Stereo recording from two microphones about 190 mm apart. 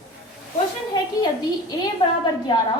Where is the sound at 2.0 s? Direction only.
30° left (ahead or behind).